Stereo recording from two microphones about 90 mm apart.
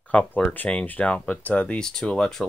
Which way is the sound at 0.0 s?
15° left (ahead or behind).